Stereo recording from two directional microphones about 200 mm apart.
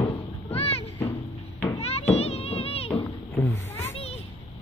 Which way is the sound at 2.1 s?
30° left (ahead or behind).